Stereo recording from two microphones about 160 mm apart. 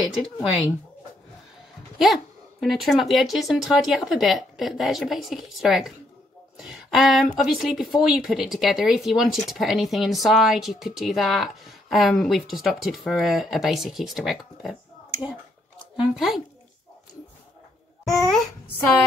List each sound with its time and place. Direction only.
2.0 s speech: centre (ahead or behind)
18.0 s speech: centre (ahead or behind)